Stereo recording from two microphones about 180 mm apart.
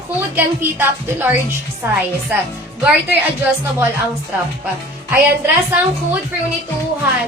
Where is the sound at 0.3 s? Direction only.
10° right (ahead or behind).